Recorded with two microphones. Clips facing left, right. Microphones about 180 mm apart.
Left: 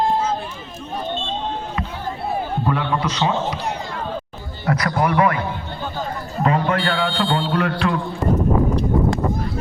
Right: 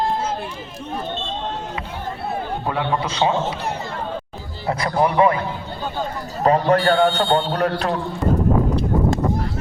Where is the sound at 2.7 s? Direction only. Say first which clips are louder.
Even; 25° right (ahead or behind).